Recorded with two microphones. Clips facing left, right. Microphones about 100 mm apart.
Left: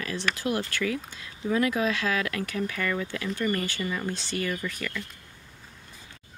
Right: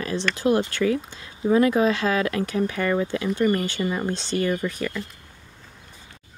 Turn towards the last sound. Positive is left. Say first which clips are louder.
# right 6 dB
turn(degrees=-30)  # may be behind; listen again after turning